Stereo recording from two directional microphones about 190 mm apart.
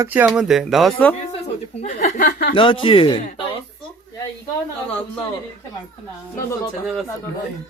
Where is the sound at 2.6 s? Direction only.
25° left (ahead or behind).